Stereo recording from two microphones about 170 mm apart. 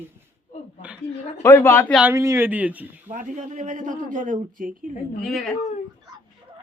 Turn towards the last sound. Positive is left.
turn(degrees=0)  # may be behind; listen again after turning